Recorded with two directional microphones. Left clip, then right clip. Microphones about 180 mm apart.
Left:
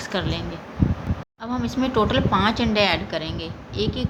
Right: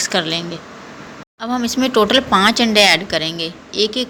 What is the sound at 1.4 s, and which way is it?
A woman's voice, 20° right (ahead or behind).